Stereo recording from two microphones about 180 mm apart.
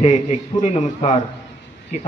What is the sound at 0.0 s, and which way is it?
A man's voice, 40° left (ahead or behind).